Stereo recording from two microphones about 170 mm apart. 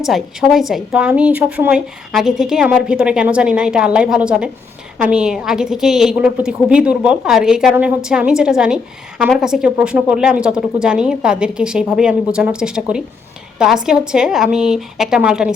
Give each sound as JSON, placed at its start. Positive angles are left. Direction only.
{"t": 0.0, "sound": "a woman's voice", "side_deg": 0}